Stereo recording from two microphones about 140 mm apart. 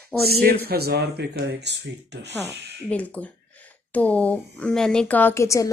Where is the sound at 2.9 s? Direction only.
10° left (ahead or behind).